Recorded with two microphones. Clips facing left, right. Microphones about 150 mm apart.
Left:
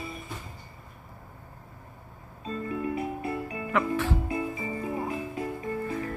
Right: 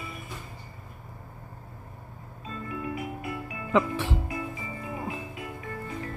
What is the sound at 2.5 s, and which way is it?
Music, 35° left (ahead or behind).